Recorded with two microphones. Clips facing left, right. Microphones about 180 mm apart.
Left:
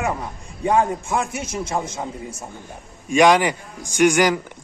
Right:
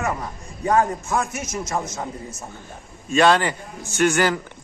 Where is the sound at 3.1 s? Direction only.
15° left (ahead or behind).